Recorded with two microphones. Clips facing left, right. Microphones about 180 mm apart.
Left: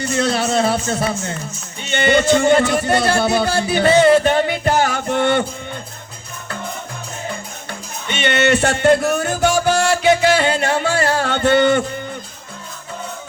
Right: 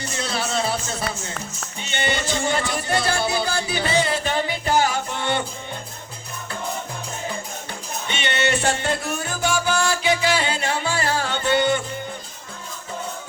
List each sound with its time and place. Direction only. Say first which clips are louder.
0.2 s speech: left 7 dB; 55° left (ahead or behind)
1.9 s music: left 11 dB; 55° left (ahead or behind)
8.2 s music: left 7 dB; 60° left (ahead or behind)